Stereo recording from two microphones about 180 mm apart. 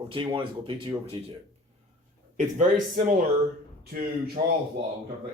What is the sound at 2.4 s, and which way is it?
Speech, 45° right (ahead or behind).